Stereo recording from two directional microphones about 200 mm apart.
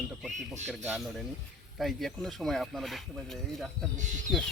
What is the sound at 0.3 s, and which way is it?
Speech, 35° right (ahead or behind).